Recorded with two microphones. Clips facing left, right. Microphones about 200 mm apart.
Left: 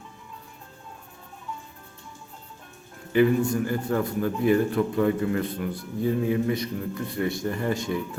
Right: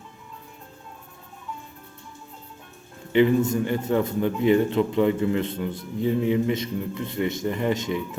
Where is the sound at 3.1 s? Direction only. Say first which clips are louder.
Right 1 dB; 20° right (ahead or behind).